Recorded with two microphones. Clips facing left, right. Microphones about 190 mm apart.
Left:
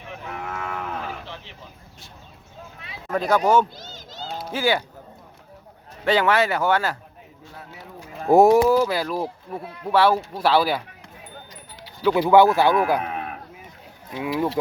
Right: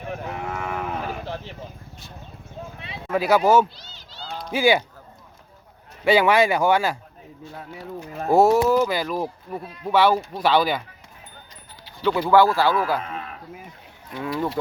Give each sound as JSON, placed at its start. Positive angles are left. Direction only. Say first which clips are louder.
{"t": 0.0, "sound": "cattle", "louder": "right 6 dB", "side_deg": -45}
{"t": 0.3, "sound": "cattle", "louder": "left 1 dB", "side_deg": -20}
{"t": 1.2, "sound": "a sound", "louder": "right 7 dB", "side_deg": -45}
{"t": 3.1, "sound": "speech", "louder": "right 1 dB", "side_deg": -5}
{"t": 3.8, "sound": "a sound", "louder": "left 5 dB", "side_deg": 45}
{"t": 4.5, "sound": "speech", "louder": "right 4 dB", "side_deg": -15}
{"t": 6.1, "sound": "speech", "louder": "right 2 dB", "side_deg": -10}
{"t": 8.3, "sound": "speech", "louder": "left 2 dB", "side_deg": 15}
{"t": 8.7, "sound": "speech", "louder": "even", "side_deg": 5}
{"t": 12.1, "sound": "speech", "louder": "left 2 dB", "side_deg": 20}
{"t": 13.0, "sound": "livestock", "louder": "left 4 dB", "side_deg": 65}
{"t": 14.2, "sound": "speech", "louder": "left 2 dB", "side_deg": 10}